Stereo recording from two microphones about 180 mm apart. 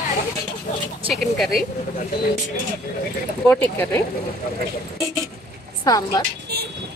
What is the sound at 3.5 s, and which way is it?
Speech, 10° left (ahead or behind).